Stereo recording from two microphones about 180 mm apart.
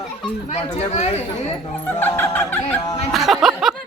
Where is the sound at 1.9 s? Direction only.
10° left (ahead or behind).